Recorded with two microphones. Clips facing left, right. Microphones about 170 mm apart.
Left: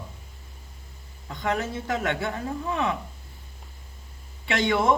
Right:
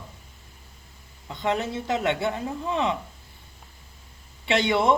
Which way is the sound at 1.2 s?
20° right (ahead or behind).